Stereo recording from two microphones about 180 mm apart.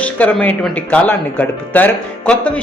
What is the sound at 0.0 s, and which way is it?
A man's voice, 10° left (ahead or behind).